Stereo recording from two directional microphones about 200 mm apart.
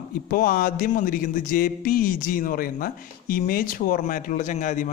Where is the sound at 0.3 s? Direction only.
45° left (ahead or behind).